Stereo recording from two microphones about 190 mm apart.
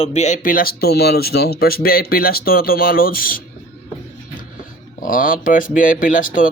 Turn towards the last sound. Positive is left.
turn(degrees=45)  # may be behind; listen again after turning